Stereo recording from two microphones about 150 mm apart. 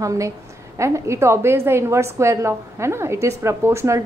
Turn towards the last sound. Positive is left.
turn(degrees=-15)  # may be behind; listen again after turning